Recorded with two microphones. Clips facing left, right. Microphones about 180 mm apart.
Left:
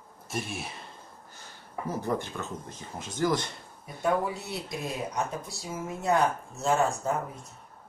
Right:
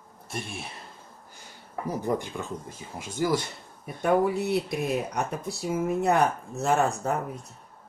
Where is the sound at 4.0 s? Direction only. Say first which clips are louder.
Right 5 dB; 60° right (ahead or behind).